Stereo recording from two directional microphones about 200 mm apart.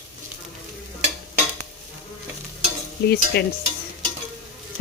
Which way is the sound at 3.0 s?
50° left (ahead or behind).